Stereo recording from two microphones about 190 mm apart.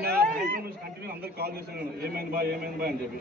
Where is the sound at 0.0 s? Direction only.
55° right (ahead or behind).